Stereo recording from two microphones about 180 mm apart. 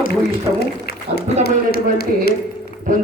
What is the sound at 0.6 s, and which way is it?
A man's voice, 60° left (ahead or behind).